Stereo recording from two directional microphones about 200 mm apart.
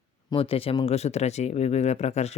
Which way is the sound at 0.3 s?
25° left (ahead or behind).